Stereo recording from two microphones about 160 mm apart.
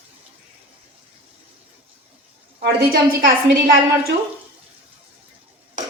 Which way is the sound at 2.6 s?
75° right (ahead or behind).